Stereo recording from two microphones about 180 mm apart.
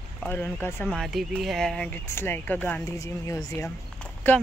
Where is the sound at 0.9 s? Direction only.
Centre (ahead or behind).